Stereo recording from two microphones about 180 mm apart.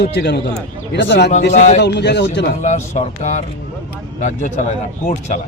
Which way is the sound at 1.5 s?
40° left (ahead or behind).